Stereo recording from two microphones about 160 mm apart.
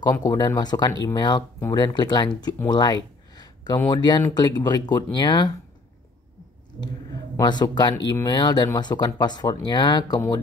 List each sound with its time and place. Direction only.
0.0 s speech: 25° left (ahead or behind)
3.3 s a sound: 25° left (ahead or behind)
4.3 s speech: 25° left (ahead or behind)
7.3 s speech: 25° left (ahead or behind)